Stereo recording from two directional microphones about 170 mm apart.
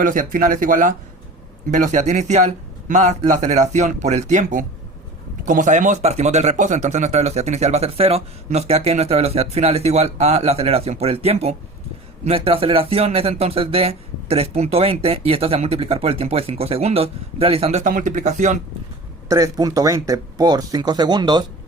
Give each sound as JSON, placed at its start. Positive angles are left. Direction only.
{"t": 0.0, "sound": "speech", "side_deg": -50}
{"t": 19.3, "sound": "speech", "side_deg": -20}